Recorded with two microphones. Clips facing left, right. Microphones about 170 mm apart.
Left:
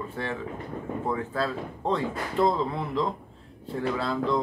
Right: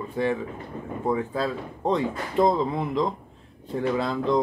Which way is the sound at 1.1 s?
15° right (ahead or behind).